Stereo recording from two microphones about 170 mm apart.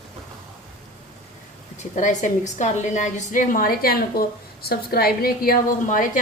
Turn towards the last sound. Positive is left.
turn(degrees=55)  # may be behind; listen again after turning